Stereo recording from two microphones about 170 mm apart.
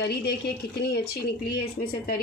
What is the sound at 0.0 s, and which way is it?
Speech, 70° left (ahead or behind).